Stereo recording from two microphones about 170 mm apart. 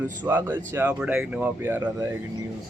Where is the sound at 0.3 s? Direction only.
10° right (ahead or behind).